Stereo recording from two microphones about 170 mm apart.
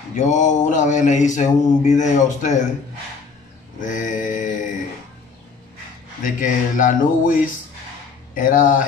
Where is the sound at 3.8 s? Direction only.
50° left (ahead or behind).